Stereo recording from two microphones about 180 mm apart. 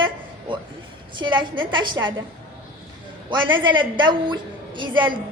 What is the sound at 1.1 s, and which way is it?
A woman's voice, 25° right (ahead or behind).